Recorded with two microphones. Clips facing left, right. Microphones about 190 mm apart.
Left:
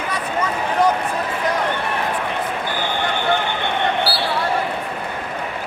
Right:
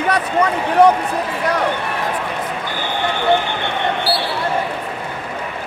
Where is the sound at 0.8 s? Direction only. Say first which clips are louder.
Right 6 dB; 60° right (ahead or behind).